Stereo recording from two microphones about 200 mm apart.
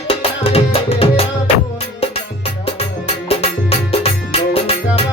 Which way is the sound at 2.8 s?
30° left (ahead or behind).